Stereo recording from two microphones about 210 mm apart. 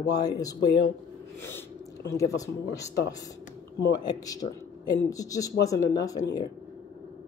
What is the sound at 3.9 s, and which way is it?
Speech, 15° left (ahead or behind).